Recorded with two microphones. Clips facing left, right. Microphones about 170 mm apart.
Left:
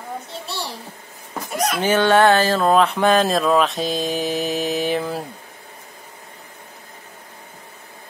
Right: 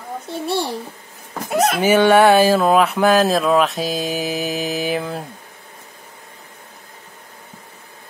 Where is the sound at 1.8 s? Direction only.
10° right (ahead or behind).